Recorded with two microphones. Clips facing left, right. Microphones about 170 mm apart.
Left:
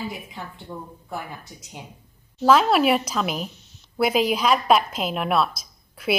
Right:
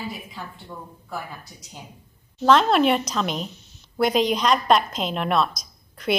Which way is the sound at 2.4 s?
5° left (ahead or behind).